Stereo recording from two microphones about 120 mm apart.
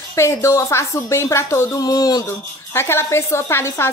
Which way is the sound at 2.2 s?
20° left (ahead or behind).